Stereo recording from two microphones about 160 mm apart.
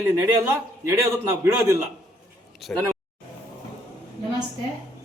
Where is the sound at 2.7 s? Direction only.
10° left (ahead or behind).